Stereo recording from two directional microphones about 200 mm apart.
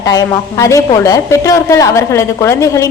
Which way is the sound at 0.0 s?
15° left (ahead or behind).